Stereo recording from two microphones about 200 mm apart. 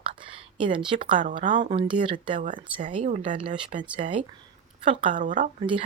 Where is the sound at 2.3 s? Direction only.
40° right (ahead or behind).